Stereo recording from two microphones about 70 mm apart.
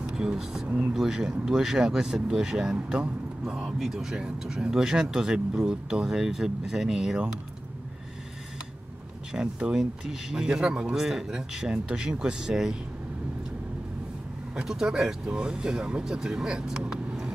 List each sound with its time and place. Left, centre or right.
0.1 s speech: centre
0.7 s speech: right
0.9 s speech: centre
9.3 s speech: centre
14.5 s speech: centre